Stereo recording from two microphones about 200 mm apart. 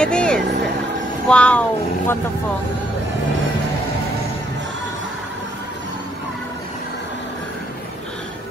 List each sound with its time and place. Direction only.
0.0 s vehicle: 5° left (ahead or behind)
1.2 s speech: 5° left (ahead or behind)